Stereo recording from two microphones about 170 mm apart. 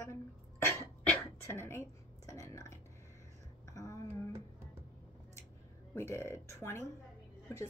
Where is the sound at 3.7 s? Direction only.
20° left (ahead or behind).